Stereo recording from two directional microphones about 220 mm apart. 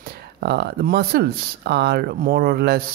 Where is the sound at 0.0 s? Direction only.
45° right (ahead or behind).